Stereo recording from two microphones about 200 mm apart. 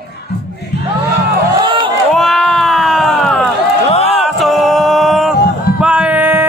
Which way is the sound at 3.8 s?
30° left (ahead or behind).